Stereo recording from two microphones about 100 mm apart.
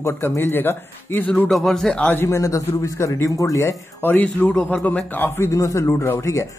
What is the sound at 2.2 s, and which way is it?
A man's voice, 30° left (ahead or behind).